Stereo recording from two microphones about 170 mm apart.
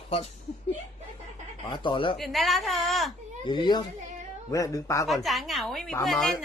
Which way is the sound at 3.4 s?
25° left (ahead or behind).